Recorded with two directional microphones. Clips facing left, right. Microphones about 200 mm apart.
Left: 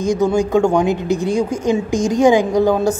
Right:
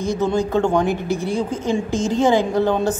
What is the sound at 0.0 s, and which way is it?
A man's voice, 15° left (ahead or behind).